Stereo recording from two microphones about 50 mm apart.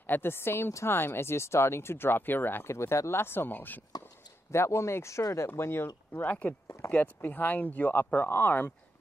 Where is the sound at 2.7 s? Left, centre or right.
Left.